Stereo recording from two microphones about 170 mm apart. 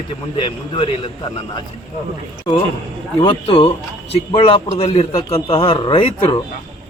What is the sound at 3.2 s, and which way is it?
A man's voice, 30° left (ahead or behind).